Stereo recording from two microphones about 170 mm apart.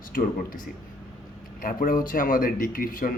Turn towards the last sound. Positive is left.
turn(degrees=55)  # may be behind; listen again after turning